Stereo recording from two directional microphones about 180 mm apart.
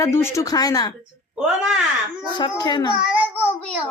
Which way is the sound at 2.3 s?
25° left (ahead or behind).